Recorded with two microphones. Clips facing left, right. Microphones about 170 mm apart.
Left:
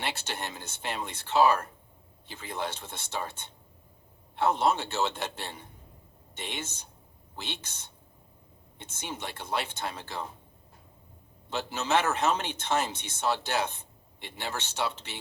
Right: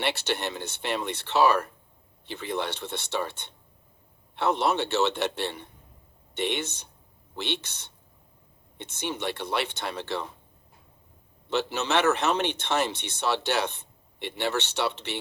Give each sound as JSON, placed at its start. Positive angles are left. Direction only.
{"t": 0.0, "sound": "a man's voice", "side_deg": -70}
{"t": 11.4, "sound": "a man's voice", "side_deg": -70}